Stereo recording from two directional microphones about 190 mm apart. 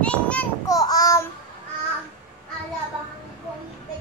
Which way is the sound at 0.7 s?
20° left (ahead or behind).